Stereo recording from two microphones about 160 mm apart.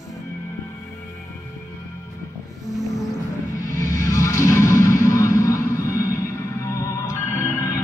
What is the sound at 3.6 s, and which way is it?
Music, 20° left (ahead or behind).